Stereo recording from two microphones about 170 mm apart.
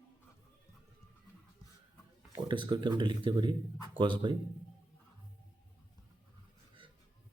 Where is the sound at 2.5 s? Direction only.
30° right (ahead or behind).